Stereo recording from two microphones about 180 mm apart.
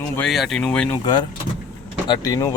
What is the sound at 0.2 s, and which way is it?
Speech, centre (ahead or behind).